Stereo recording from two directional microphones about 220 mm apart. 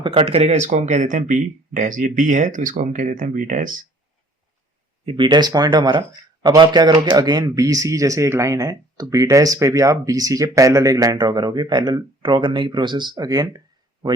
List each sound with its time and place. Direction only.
0.0 s speech: 25° right (ahead or behind)
5.0 s speech: 20° right (ahead or behind)